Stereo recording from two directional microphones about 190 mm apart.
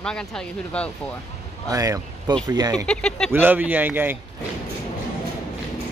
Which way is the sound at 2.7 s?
5° left (ahead or behind).